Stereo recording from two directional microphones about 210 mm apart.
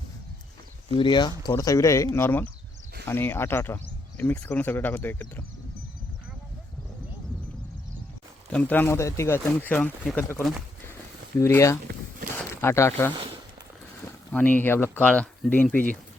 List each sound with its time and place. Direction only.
0.9 s speech: 20° left (ahead or behind)
8.5 s speech: 10° left (ahead or behind)
14.3 s speech: 5° left (ahead or behind)